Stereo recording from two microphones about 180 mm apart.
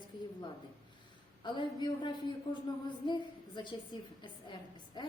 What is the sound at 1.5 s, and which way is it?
A woman's voice, 25° left (ahead or behind).